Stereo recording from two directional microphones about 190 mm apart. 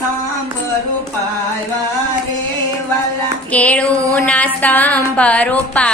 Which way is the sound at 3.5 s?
5° left (ahead or behind).